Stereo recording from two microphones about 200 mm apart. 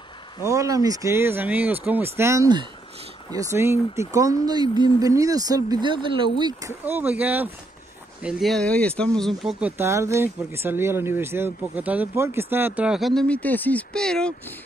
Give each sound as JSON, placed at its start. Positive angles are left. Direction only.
{"t": 0.5, "sound": "speech", "side_deg": -15}
{"t": 6.8, "sound": "speech", "side_deg": -10}